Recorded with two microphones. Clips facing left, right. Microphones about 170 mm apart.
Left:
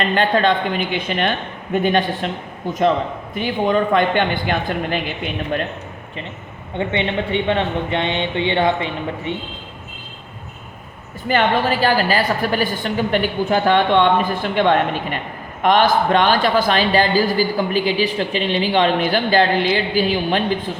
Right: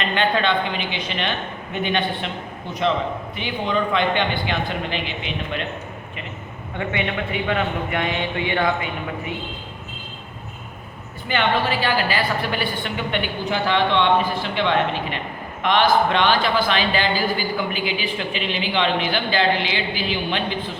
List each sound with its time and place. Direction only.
0.0 s speech: 40° left (ahead or behind)
3.3 s speech: 45° left (ahead or behind)
6.7 s a man's voice: 30° left (ahead or behind)
11.3 s a man's voice: 40° left (ahead or behind)